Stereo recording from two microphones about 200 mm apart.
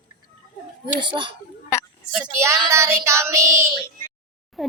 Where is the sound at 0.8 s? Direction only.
25° right (ahead or behind).